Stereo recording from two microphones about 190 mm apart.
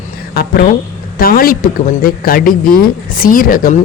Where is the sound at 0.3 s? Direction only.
50° left (ahead or behind).